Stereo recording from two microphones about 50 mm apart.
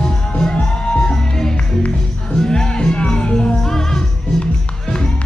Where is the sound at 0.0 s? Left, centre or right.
Centre.